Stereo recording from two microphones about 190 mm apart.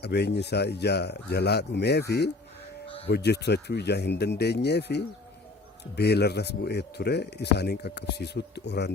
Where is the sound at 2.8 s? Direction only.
30° left (ahead or behind).